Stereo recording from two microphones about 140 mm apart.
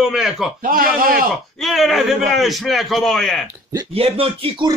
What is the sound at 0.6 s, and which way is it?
Speech, 90° right.